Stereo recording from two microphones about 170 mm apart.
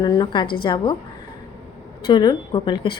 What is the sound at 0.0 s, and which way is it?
Speech, 25° left (ahead or behind).